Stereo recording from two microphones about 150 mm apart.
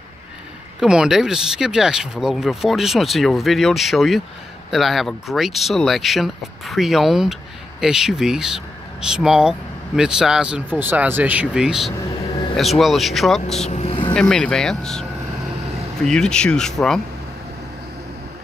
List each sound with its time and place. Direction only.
0.7 s speech: 5° right (ahead or behind)
13.7 s vehicle: 45° left (ahead or behind)
14.1 s speech: 5° left (ahead or behind)